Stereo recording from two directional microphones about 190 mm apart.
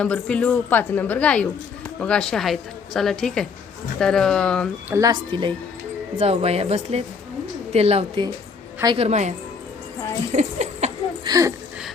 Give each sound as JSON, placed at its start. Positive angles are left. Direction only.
{"t": 0.0, "sound": "a woman's voice", "side_deg": 5}
{"t": 4.9, "sound": "a woman's voice", "side_deg": -20}
{"t": 10.3, "sound": "speech", "side_deg": -35}
{"t": 11.3, "sound": "speech", "side_deg": -20}